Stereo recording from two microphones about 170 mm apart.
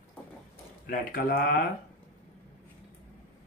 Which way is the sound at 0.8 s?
60° left (ahead or behind).